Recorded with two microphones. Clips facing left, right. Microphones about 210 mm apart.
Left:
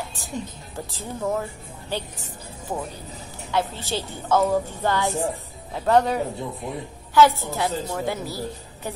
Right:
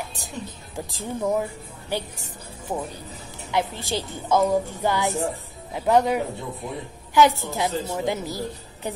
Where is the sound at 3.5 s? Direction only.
15° right (ahead or behind).